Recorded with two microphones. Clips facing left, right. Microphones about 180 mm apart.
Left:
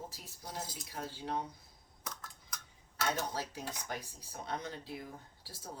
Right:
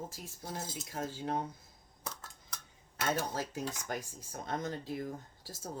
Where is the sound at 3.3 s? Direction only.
45° right (ahead or behind).